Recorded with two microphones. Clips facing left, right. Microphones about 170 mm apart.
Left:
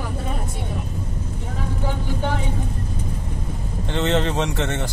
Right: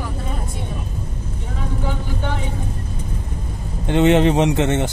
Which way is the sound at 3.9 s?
15° right (ahead or behind).